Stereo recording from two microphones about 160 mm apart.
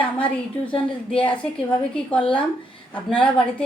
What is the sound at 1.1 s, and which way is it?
A woman's voice, 5° left (ahead or behind).